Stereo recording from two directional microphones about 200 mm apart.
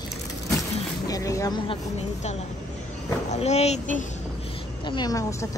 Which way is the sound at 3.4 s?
30° left (ahead or behind).